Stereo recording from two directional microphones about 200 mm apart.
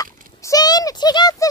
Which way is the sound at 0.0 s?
15° left (ahead or behind).